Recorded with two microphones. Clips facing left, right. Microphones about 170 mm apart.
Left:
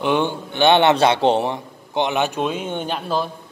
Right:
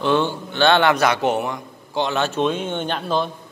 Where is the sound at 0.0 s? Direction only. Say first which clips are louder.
Even; 15° left (ahead or behind).